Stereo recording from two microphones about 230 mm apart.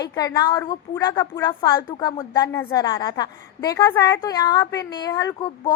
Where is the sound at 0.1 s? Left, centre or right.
Centre.